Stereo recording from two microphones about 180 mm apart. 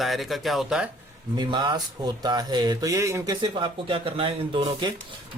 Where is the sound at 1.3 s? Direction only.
25° right (ahead or behind).